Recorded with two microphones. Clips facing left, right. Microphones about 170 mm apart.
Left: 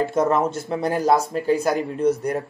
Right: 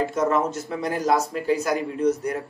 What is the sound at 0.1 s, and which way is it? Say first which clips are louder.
A man's voice: left 2 dB; 30° left (ahead or behind).